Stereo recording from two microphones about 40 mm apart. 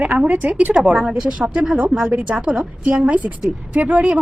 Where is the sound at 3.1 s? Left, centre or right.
Right.